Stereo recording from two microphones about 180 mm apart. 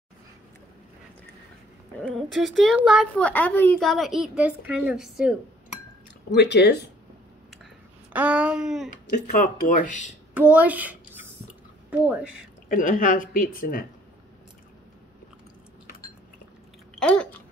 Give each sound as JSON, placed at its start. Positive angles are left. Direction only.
{"t": 2.0, "sound": "a woman's voice", "side_deg": 5}
{"t": 3.2, "sound": "a child's voice", "side_deg": 10}
{"t": 3.8, "sound": "a woman's voice", "side_deg": 0}
{"t": 6.3, "sound": "speech", "side_deg": 70}
{"t": 8.1, "sound": "a sound", "side_deg": -5}
{"t": 8.9, "sound": "a woman's voice", "side_deg": 55}
{"t": 10.3, "sound": "a woman's voice", "side_deg": -10}
{"t": 12.6, "sound": "a woman's voice", "side_deg": 50}
{"t": 17.0, "sound": "a sound", "side_deg": 5}